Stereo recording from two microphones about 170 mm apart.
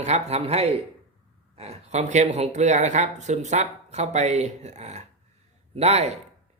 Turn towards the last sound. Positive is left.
turn(degrees=-40)  # may be behind; listen again after turning